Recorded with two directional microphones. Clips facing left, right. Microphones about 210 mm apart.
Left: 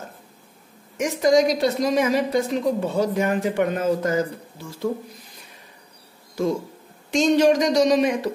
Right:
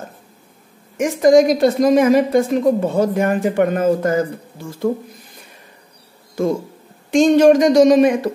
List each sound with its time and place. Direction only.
0.9 s a woman's voice: 50° right (ahead or behind)
6.4 s a woman's voice: 50° right (ahead or behind)